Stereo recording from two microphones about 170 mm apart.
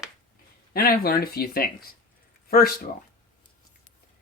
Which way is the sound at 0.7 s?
65° left (ahead or behind).